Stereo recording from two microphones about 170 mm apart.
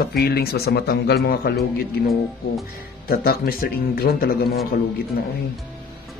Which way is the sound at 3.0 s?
60° left (ahead or behind).